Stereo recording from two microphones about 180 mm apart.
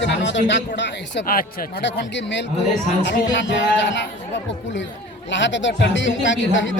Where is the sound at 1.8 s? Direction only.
80° left.